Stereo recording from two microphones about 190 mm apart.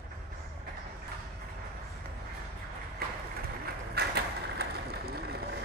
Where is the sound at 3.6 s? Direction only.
55° right (ahead or behind).